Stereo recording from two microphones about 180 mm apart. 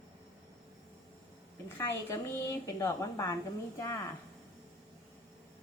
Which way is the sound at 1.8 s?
15° left (ahead or behind).